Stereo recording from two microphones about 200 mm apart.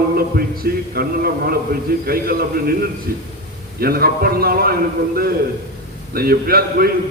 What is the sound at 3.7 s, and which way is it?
A man's voice, 50° right (ahead or behind).